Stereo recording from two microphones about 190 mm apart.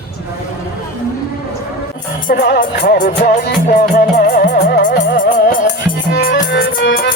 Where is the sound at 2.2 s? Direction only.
55° left (ahead or behind).